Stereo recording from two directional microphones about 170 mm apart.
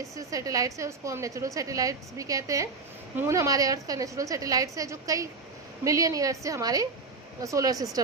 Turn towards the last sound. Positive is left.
turn(degrees=-20)  # may be behind; listen again after turning